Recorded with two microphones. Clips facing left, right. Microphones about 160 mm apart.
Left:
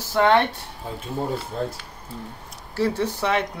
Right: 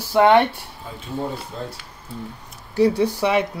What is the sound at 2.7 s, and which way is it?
Speech, 15° right (ahead or behind).